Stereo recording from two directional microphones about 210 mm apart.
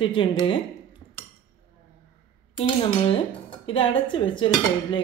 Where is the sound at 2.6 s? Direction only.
25° left (ahead or behind).